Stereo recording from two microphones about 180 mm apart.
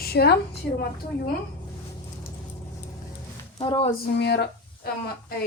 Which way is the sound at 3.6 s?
30° left (ahead or behind).